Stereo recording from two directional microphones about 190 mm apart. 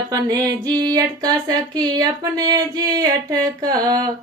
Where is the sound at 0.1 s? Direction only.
20° right (ahead or behind).